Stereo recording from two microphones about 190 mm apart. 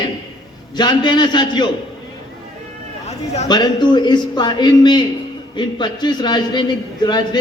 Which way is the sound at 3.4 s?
20° left (ahead or behind).